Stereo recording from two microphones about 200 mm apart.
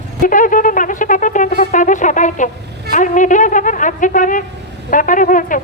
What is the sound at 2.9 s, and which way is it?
Speech, 40° left (ahead or behind).